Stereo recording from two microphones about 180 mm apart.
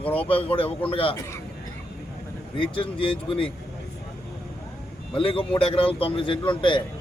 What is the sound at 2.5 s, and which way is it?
Speech, 30° left (ahead or behind).